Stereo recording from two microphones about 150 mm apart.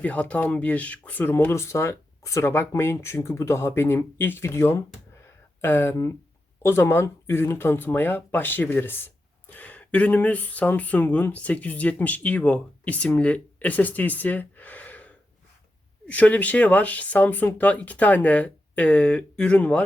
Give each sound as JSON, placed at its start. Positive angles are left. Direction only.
{"t": 0.0, "sound": "speech", "side_deg": 10}